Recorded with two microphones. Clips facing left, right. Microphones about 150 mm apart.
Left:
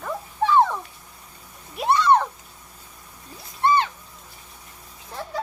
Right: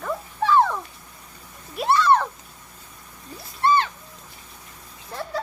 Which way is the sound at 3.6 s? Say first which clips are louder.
Even; 20° left (ahead or behind).